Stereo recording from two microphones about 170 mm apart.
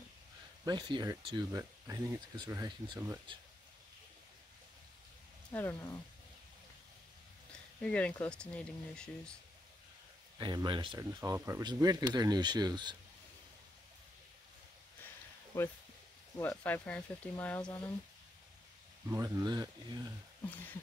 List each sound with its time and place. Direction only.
0.7 s speech: 25° right (ahead or behind)
5.5 s speech: 10° left (ahead or behind)
7.8 s speech: 5° left (ahead or behind)
10.4 s speech: 25° right (ahead or behind)
15.5 s speech: 15° left (ahead or behind)
19.0 s speech: 20° right (ahead or behind)